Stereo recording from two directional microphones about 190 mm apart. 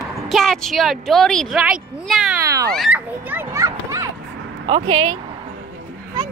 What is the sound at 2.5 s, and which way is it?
Speech, 15° right (ahead or behind).